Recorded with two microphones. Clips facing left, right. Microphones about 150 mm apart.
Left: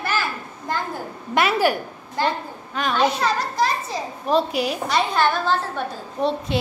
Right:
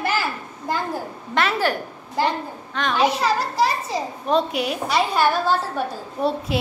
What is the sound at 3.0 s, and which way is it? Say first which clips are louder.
A child's voice: right 1 dB; 10° right (ahead or behind).